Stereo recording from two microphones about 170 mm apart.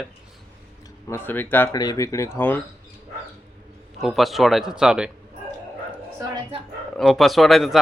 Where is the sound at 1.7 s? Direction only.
20° left (ahead or behind).